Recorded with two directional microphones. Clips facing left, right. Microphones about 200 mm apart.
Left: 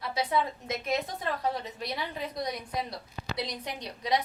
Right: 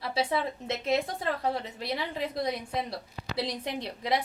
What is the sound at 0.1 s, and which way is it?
A woman's voice, 30° right (ahead or behind).